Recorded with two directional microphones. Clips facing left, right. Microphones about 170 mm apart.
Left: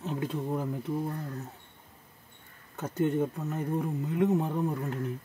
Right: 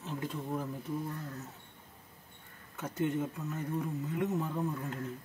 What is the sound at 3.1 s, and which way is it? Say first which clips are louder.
Speech: left 6 dB; 40° left (ahead or behind).